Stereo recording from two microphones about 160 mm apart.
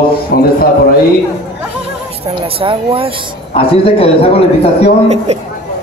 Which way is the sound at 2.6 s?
35° right (ahead or behind).